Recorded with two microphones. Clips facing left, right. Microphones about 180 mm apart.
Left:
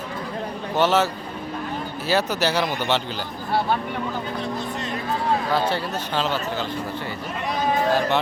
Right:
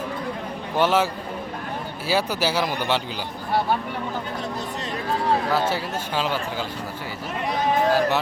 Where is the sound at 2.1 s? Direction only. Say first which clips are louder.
Left 1 dB; 10° right (ahead or behind).